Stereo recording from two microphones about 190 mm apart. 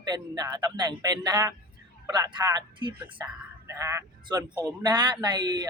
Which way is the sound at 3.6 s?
15° right (ahead or behind).